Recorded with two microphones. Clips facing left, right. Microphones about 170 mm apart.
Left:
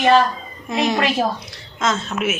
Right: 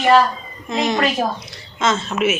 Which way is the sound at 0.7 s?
5° left (ahead or behind).